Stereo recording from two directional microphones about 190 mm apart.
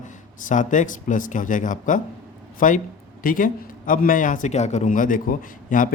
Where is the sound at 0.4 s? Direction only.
40° left (ahead or behind).